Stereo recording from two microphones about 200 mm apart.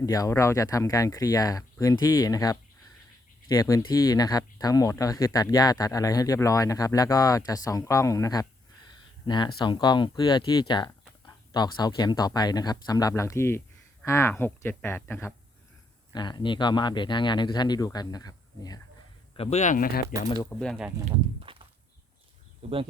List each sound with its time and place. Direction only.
0.0 s speech: 15° left (ahead or behind)
16.1 s speech: 20° left (ahead or behind)
19.4 s speech: 30° left (ahead or behind)
20.1 s speech: 15° right (ahead or behind)
20.6 s speech: 5° left (ahead or behind)
21.0 s a sound: 25° right (ahead or behind)
22.6 s speech: 30° right (ahead or behind)